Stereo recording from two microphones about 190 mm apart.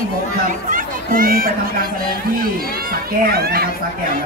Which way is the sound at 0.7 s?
45° right (ahead or behind).